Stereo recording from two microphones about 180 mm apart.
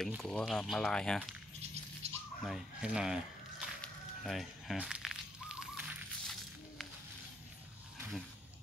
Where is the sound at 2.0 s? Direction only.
35° right (ahead or behind).